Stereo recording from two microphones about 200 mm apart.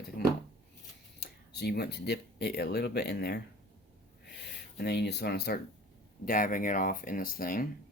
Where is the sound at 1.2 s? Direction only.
55° left (ahead or behind).